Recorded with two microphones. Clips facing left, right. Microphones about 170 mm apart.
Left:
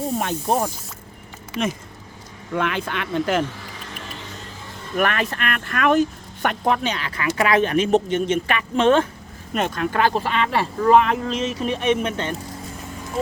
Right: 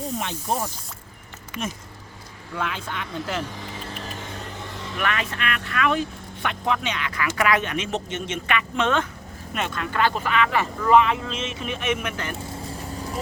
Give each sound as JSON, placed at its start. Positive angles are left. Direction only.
{"t": 0.2, "sound": "speech", "side_deg": 50}
{"t": 1.6, "sound": "speech", "side_deg": 90}
{"t": 2.6, "sound": "speech", "side_deg": 65}
{"t": 4.9, "sound": "speech", "side_deg": 45}
{"t": 9.6, "sound": "speech", "side_deg": 40}